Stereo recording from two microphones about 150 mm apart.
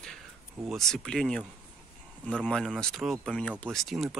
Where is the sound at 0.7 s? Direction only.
Centre (ahead or behind).